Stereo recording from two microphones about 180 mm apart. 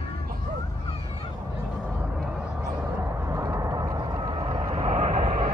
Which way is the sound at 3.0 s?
15° right (ahead or behind).